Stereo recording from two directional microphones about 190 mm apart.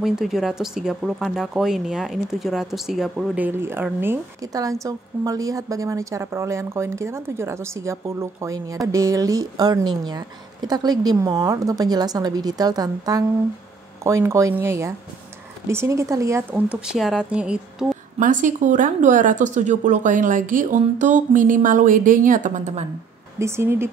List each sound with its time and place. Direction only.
0.0 s speech: centre (ahead or behind)
16.8 s speech: 5° right (ahead or behind)
18.2 s speech: 40° right (ahead or behind)
23.4 s speech: 15° right (ahead or behind)